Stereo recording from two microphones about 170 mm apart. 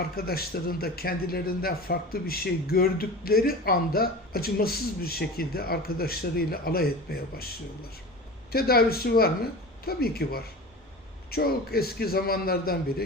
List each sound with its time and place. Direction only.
0.2 s speech: 65° left (ahead or behind)
8.5 s speech: 65° left (ahead or behind)